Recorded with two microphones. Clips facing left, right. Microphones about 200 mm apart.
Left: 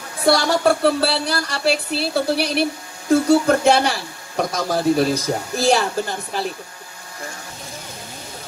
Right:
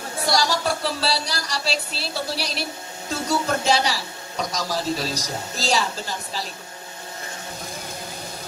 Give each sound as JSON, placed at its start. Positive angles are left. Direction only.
{"t": 0.3, "sound": "speech", "side_deg": 60}